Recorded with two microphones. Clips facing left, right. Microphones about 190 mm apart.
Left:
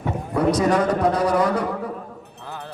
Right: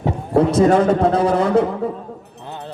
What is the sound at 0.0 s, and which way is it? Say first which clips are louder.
A man's voice: right 5 dB; 25° right (ahead or behind).